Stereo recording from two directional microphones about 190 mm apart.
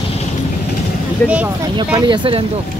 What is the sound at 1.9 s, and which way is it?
Speech, 25° right (ahead or behind).